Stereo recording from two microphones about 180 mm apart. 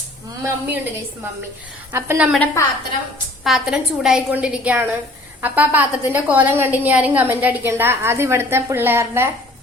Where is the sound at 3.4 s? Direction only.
Centre (ahead or behind).